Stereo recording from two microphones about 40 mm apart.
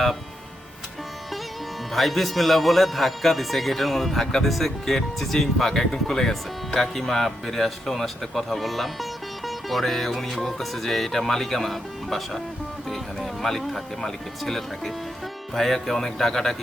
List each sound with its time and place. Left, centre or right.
1.9 s speech: centre